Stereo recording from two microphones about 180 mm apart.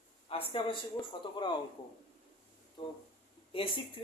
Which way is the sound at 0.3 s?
30° left (ahead or behind).